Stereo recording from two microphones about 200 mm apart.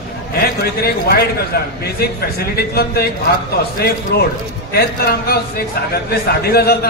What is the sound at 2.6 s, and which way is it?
Speech, 50° left (ahead or behind).